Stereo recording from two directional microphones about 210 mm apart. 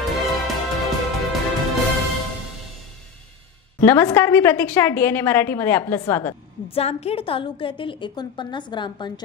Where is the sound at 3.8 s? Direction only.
10° left (ahead or behind).